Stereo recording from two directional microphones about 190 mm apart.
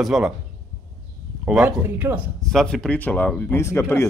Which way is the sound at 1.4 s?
5° right (ahead or behind).